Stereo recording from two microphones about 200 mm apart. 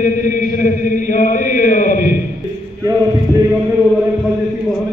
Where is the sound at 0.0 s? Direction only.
40° left (ahead or behind).